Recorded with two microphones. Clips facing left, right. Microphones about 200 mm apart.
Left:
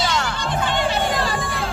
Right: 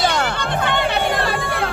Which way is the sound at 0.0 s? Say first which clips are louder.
Right 3 dB; 60° right (ahead or behind).